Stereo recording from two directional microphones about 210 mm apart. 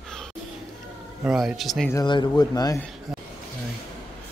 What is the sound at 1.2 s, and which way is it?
Speech, 5° right (ahead or behind).